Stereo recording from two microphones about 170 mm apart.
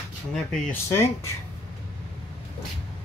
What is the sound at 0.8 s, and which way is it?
Speech, 15° left (ahead or behind).